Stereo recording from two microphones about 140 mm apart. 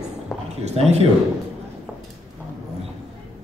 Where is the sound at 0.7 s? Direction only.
50° right (ahead or behind).